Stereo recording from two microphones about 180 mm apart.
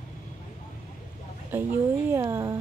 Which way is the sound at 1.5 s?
10° right (ahead or behind).